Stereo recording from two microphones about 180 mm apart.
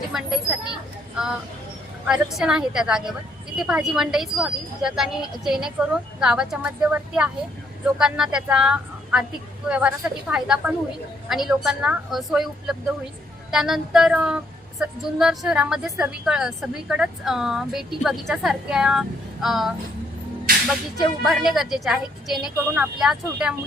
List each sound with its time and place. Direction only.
0.1 s speech: 5° right (ahead or behind)